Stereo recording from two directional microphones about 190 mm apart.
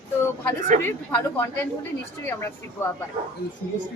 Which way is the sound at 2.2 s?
10° left (ahead or behind).